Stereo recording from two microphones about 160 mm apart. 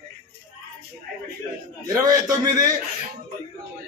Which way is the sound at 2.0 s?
25° right (ahead or behind).